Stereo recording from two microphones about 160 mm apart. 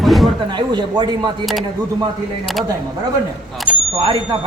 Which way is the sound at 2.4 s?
Centre (ahead or behind).